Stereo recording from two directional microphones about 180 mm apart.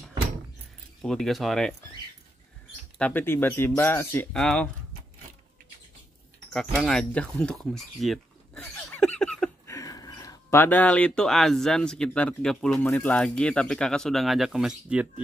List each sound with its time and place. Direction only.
1.0 s speech: centre (ahead or behind)
3.0 s speech: 10° left (ahead or behind)
6.5 s speech: 5° left (ahead or behind)
8.6 s a sound: 10° left (ahead or behind)
9.7 s speech: 20° left (ahead or behind); by 15.0 s 5° right (ahead or behind)